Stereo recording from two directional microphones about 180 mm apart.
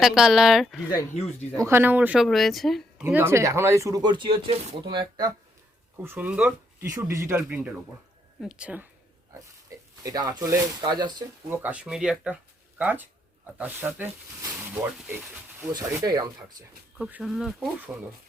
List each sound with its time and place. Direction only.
0.0 s speech: centre (ahead or behind)
1.6 s speech: 10° right (ahead or behind)
3.0 s speech: 10° right (ahead or behind)
6.0 s speech: 10° right (ahead or behind)
9.6 s speech: 20° right (ahead or behind)
17.0 s speech: 5° right (ahead or behind)